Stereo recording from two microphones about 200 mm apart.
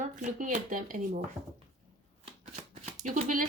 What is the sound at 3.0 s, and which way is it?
Speech, 40° right (ahead or behind).